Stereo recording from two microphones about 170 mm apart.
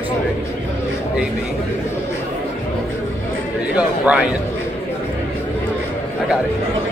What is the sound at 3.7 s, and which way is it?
Speech, 5° right (ahead or behind).